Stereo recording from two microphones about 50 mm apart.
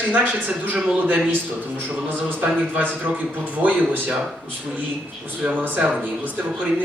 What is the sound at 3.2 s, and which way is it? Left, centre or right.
Speech, right.